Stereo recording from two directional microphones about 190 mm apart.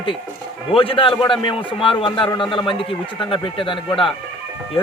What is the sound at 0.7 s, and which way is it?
A man's voice, 30° left (ahead or behind).